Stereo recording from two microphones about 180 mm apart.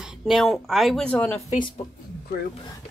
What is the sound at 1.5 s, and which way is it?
Speech, 25° left (ahead or behind).